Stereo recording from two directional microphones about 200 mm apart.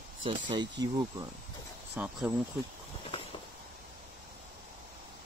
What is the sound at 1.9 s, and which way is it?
Speech, 5° right (ahead or behind).